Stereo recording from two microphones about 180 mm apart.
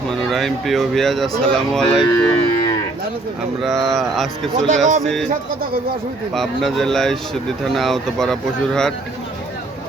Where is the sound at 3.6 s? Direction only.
Centre (ahead or behind).